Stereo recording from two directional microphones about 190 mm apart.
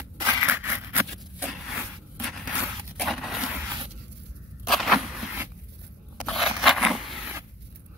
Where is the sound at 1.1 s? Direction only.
Centre (ahead or behind).